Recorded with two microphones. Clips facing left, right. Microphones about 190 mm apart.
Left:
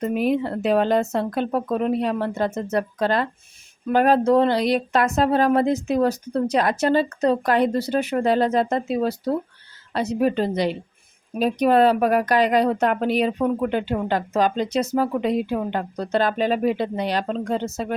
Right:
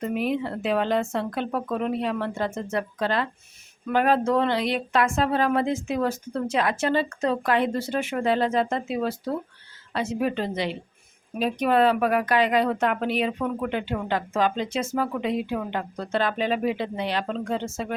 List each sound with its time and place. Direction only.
0.0 s speech: 45° left (ahead or behind)